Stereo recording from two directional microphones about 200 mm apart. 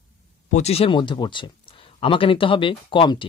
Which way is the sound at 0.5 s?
35° left (ahead or behind).